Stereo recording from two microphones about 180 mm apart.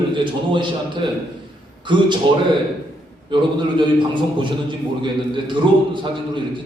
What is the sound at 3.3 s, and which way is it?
A man's voice, 25° right (ahead or behind).